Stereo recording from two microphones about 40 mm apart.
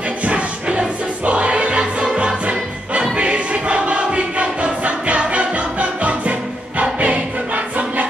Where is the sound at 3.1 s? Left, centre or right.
Right.